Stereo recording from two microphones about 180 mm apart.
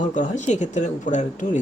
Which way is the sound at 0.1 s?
45° left (ahead or behind).